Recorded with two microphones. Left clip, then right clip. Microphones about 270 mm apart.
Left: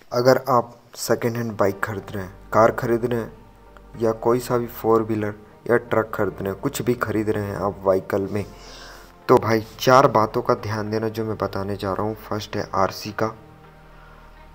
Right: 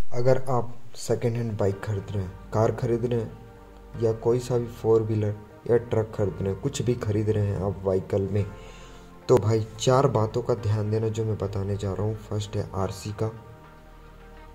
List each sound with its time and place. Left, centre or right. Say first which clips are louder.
0.1 s a man's voice: left 7 dB; centre
4.3 s a man's voice: left 4 dB; centre
13.0 s a man's voice: left 7 dB; centre